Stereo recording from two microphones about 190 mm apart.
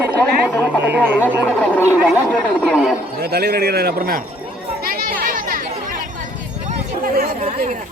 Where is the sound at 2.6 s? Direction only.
5° right (ahead or behind).